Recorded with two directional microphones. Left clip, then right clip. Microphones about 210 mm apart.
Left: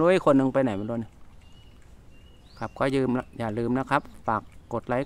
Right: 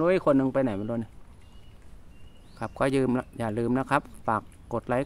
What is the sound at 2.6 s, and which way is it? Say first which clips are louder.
Speech: even; centre (ahead or behind).